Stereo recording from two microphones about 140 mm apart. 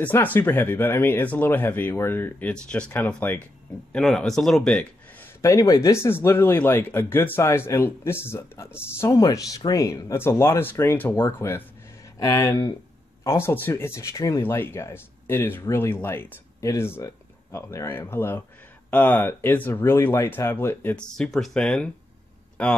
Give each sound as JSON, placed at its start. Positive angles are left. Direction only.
{"t": 0.0, "sound": "speech", "side_deg": 15}
{"t": 5.2, "sound": "speech", "side_deg": 20}
{"t": 20.9, "sound": "speech", "side_deg": 5}